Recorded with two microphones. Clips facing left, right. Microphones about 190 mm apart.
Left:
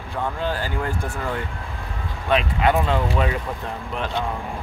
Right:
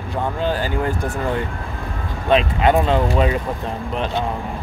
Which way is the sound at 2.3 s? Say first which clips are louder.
Right 4 dB; 25° right (ahead or behind).